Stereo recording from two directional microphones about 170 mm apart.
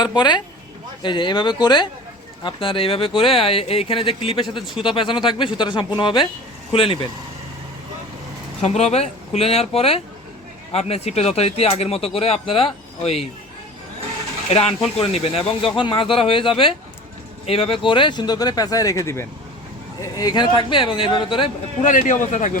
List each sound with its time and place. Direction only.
0.0 s speech: 25° left (ahead or behind)
8.6 s speech: 40° left (ahead or behind)
14.5 s speech: 40° left (ahead or behind)
21.8 s a man's voice: 50° left (ahead or behind)